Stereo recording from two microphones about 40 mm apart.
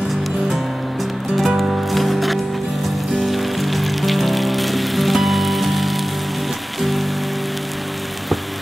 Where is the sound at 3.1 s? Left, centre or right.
Centre.